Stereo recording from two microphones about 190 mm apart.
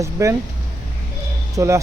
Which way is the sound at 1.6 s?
15° right (ahead or behind).